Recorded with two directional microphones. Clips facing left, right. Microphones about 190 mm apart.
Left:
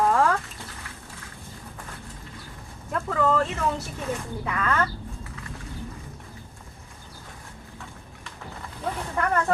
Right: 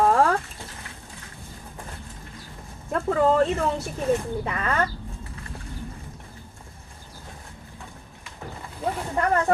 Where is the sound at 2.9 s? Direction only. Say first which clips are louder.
Right 4 dB; 35° right (ahead or behind).